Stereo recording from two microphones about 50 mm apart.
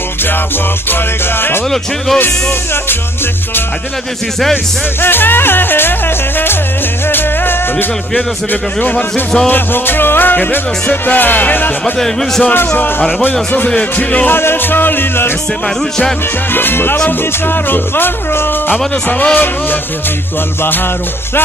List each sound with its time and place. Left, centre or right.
2.1 s music: left
5.0 s music: left
8.9 s a man's voice: centre
9.5 s music: left
11.8 s a man's voice: centre
12.5 s music: left
13.9 s music: left
14.3 s music: left
16.5 s music: left
19.0 s music: left